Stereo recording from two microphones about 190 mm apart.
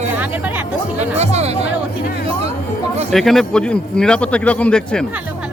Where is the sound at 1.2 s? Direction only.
35° right (ahead or behind).